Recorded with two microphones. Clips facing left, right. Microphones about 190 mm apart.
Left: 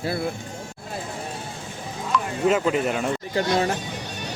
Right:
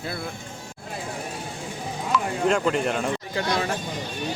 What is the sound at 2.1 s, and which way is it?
Speech, 5° left (ahead or behind).